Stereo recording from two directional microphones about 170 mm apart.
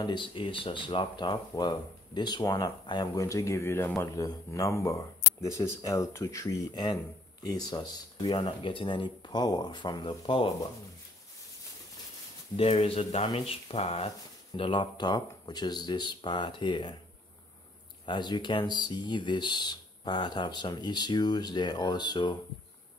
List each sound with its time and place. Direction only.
0.0 s speech: 30° left (ahead or behind)
12.5 s speech: 35° left (ahead or behind)
18.0 s speech: 25° left (ahead or behind)